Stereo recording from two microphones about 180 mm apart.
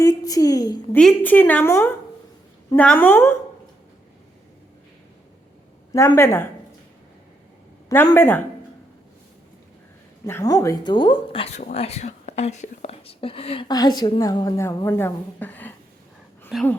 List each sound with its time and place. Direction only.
0.0 s a woman's voice: 20° left (ahead or behind)
0.9 s a woman's voice: 10° left (ahead or behind)
5.9 s a woman's voice: 15° left (ahead or behind)
7.9 s a woman's voice: 15° left (ahead or behind)
10.2 s speech: 15° left (ahead or behind)
16.5 s speech: 5° right (ahead or behind)